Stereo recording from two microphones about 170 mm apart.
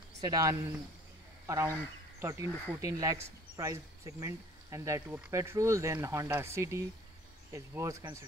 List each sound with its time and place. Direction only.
0.2 s speech: 20° right (ahead or behind)